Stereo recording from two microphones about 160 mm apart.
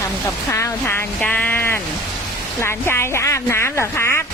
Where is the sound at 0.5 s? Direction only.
15° left (ahead or behind).